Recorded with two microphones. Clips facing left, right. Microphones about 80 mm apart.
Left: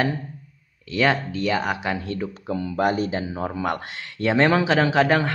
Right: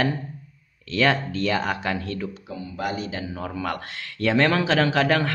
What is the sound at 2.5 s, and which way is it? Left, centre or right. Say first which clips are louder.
Speech: left 7 dB; left.